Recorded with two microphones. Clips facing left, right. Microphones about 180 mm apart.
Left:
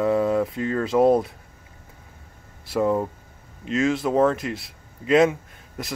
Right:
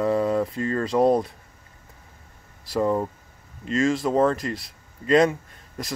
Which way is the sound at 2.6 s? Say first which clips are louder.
Left 1 dB; centre (ahead or behind).